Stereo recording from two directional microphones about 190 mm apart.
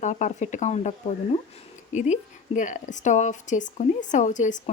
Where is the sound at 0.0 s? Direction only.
40° left (ahead or behind).